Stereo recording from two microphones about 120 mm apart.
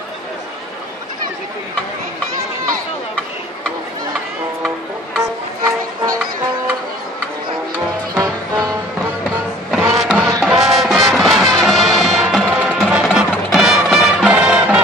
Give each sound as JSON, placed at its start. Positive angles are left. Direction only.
{"t": 8.1, "sound": "music", "side_deg": -35}
{"t": 9.9, "sound": "music", "side_deg": -10}